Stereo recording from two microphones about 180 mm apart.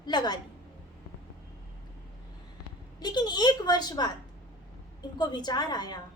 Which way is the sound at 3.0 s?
25° left (ahead or behind).